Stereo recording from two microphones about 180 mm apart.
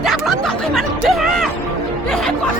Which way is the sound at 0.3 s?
Centre (ahead or behind).